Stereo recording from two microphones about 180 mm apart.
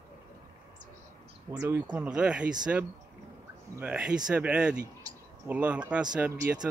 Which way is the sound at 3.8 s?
5° right (ahead or behind).